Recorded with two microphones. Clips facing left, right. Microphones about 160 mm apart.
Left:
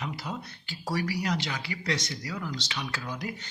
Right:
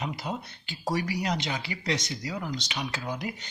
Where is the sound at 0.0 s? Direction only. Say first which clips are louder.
Right 2 dB; 20° right (ahead or behind).